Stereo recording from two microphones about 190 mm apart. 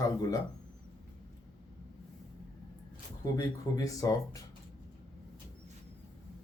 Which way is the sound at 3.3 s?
15° left (ahead or behind).